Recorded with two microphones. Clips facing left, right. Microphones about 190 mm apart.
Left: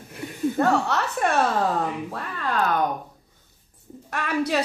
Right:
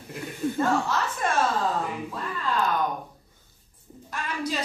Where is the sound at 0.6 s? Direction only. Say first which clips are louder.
Left 3 dB; 65° left (ahead or behind).